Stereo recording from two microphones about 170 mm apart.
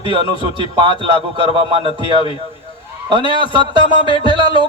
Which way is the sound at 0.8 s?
30° right (ahead or behind).